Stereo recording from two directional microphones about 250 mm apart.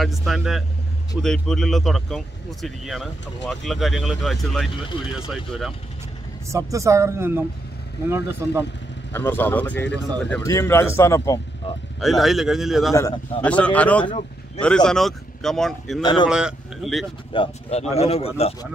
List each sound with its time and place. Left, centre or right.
0.0 s speech: centre
6.5 s speech: centre
9.1 s speech: centre
12.0 s speech: centre
12.9 s speech: centre
16.0 s speech: centre
16.3 s speech: centre
17.3 s speech: left